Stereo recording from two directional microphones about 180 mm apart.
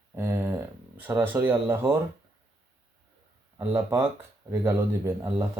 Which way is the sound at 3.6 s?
15° right (ahead or behind).